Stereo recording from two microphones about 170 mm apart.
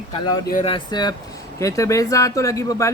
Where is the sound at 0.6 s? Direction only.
25° left (ahead or behind).